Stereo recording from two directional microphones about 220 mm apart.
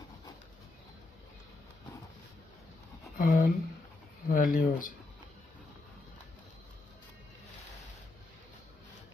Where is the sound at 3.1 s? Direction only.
40° left (ahead or behind).